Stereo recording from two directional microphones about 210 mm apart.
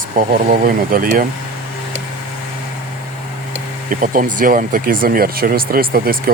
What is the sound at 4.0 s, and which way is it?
Speech, 40° right (ahead or behind).